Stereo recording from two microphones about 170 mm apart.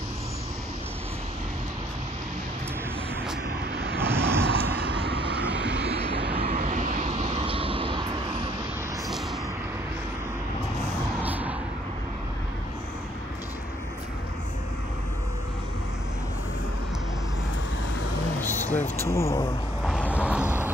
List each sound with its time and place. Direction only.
4.0 s vehicle: 15° right (ahead or behind)
4.9 s vehicle: 30° right (ahead or behind)
5.4 s vehicle: 5° right (ahead or behind)
6.1 s vehicle: 30° right (ahead or behind)
6.6 s vehicle: 50° right (ahead or behind); by 8.2 s 30° right (ahead or behind)
11.2 s vehicle: 10° right (ahead or behind)
18.4 s a sound: 10° left (ahead or behind)
20.2 s vehicle: 5° right (ahead or behind)